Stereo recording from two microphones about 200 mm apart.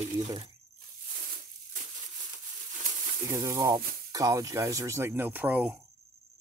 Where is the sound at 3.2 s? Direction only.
15° right (ahead or behind).